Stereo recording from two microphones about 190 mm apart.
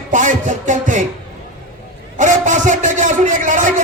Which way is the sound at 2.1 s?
40° right (ahead or behind).